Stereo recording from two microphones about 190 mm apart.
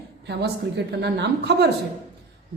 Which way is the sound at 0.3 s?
60° right (ahead or behind).